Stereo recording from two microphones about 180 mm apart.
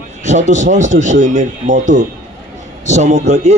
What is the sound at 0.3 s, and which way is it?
A man's voice, 40° right (ahead or behind).